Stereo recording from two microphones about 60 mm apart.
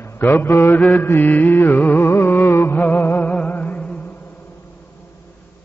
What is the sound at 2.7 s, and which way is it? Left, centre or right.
Music, left.